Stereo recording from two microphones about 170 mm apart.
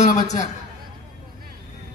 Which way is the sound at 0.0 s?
45° left (ahead or behind).